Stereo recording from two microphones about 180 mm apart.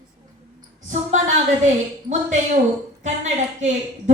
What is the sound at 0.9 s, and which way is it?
Speech, 40° right (ahead or behind).